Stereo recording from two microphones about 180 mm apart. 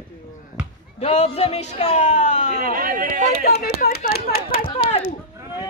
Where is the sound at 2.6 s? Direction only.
50° right (ahead or behind).